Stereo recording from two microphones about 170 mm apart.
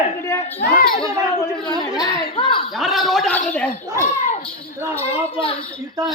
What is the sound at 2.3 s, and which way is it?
Speech, 30° left (ahead or behind).